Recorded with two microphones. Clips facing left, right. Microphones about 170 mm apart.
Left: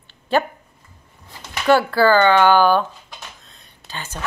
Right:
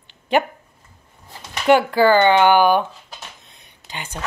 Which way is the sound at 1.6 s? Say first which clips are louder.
Right 1 dB; 15° right (ahead or behind).